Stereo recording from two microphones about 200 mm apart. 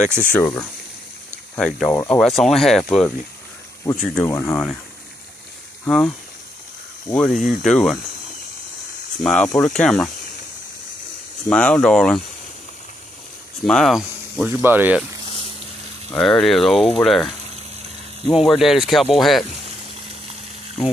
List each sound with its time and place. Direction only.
0.3 s speech: 10° left (ahead or behind)
4.2 s speech: 15° left (ahead or behind)
5.9 s speech: 5° left (ahead or behind)
9.2 s speech: 5° left (ahead or behind)
11.4 s speech: 5° left (ahead or behind)
13.7 s speech: centre (ahead or behind)
16.1 s speech: 5° left (ahead or behind)
18.3 s speech: centre (ahead or behind)